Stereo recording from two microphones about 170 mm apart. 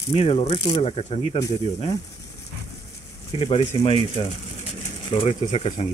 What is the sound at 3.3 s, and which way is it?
Speech, 30° left (ahead or behind).